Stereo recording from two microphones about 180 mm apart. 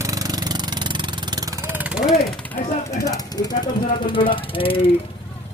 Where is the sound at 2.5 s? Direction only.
20° left (ahead or behind).